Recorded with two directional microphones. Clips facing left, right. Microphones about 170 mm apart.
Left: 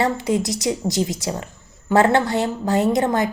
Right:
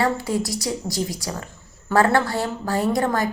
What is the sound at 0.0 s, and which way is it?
A woman's voice, 20° left (ahead or behind).